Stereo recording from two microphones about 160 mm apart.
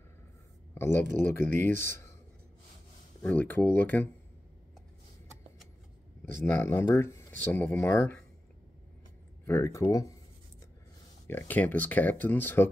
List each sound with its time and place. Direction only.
0.7 s speech: 15° left (ahead or behind)
3.2 s speech: 10° left (ahead or behind)
6.4 s speech: 15° left (ahead or behind)
9.5 s speech: 20° left (ahead or behind)
11.2 s speech: 10° left (ahead or behind)